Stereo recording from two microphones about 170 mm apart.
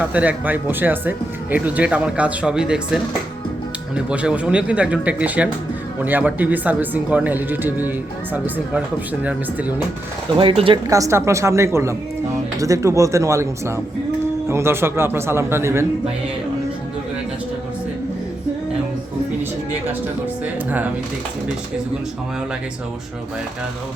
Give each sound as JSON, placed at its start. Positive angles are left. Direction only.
{"t": 0.0, "sound": "speech", "side_deg": -10}
{"t": 10.3, "sound": "speech", "side_deg": -30}
{"t": 10.8, "sound": "speech", "side_deg": -20}
{"t": 20.7, "sound": "speech", "side_deg": -10}